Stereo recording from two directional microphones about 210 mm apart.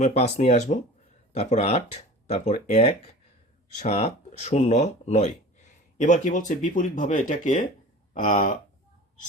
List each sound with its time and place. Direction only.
0.0 s speech: 30° left (ahead or behind)